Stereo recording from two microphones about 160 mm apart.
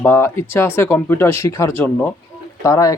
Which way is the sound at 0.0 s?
15° left (ahead or behind).